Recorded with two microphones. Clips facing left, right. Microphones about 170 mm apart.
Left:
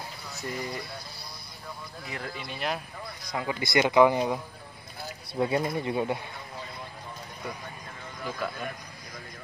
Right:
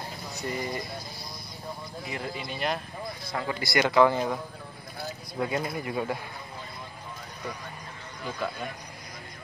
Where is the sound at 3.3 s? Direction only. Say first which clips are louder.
Left 1 dB; 15° left (ahead or behind).